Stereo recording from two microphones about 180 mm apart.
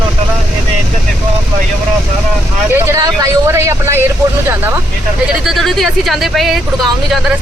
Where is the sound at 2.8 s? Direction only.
20° right (ahead or behind).